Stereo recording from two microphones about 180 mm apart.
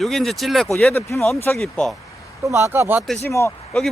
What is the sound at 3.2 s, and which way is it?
Speech, 15° left (ahead or behind).